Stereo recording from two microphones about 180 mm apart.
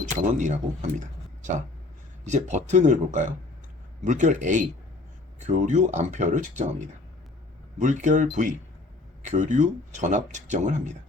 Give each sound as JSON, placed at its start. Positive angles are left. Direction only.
{"t": 0.2, "sound": "speech", "side_deg": -45}
{"t": 2.2, "sound": "speech", "side_deg": -40}